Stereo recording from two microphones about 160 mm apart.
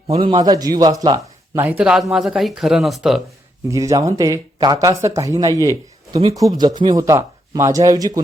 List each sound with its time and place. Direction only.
0.1 s speech: 30° right (ahead or behind)
1.5 s a man's voice: 10° right (ahead or behind)
3.7 s speech: 20° right (ahead or behind)